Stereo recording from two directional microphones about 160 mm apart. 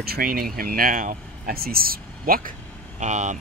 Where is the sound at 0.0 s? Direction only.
70° right (ahead or behind).